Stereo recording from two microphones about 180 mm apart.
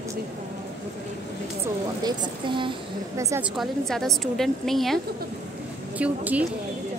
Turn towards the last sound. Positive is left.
turn(degrees=-10)  # may be behind; listen again after turning